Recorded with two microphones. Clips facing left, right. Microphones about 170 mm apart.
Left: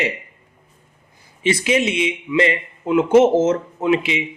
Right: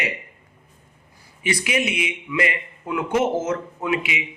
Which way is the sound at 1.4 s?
25° left (ahead or behind).